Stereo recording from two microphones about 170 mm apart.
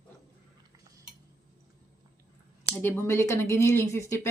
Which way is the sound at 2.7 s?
15° left (ahead or behind).